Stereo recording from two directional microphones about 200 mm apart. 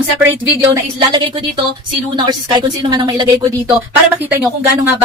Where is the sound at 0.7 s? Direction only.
20° right (ahead or behind).